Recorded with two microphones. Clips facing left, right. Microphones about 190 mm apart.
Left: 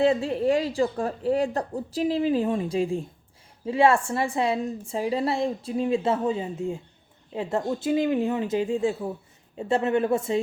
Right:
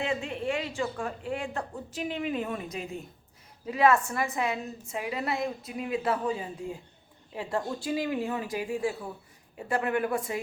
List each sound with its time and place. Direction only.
0.0 s a woman's voice: 35° left (ahead or behind)